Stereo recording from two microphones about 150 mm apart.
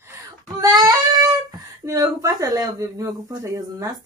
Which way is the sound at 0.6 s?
25° right (ahead or behind).